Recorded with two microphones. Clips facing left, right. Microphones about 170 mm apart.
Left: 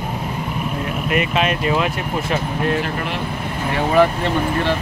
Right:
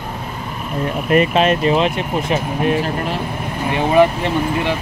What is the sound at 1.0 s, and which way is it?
Speech, 35° right (ahead or behind).